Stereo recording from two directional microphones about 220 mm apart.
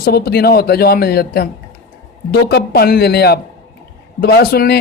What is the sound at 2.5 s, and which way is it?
Speech, 45° left (ahead or behind).